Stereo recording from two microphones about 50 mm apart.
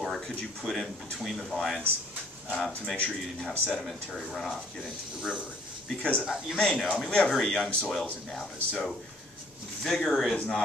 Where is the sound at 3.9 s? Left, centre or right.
Centre.